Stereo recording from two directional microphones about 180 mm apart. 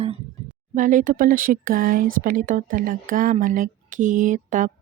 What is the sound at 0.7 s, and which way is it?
Speech, 45° right (ahead or behind).